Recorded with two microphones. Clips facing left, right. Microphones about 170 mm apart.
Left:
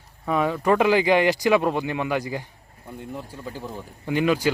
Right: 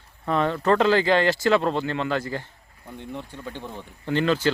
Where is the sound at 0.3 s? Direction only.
10° left (ahead or behind).